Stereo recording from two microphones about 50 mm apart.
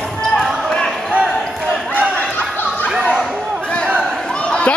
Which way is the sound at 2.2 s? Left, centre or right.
Left.